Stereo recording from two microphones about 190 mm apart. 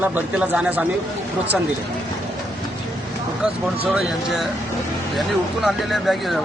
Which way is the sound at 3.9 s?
Centre (ahead or behind).